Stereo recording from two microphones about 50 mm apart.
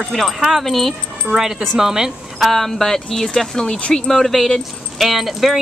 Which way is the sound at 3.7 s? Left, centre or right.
Left.